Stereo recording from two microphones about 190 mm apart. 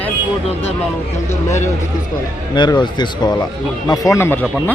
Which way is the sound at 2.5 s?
25° left (ahead or behind).